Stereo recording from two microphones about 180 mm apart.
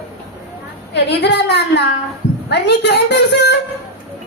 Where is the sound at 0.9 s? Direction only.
70° left (ahead or behind).